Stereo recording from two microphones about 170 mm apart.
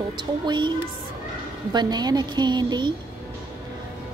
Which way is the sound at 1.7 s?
25° right (ahead or behind).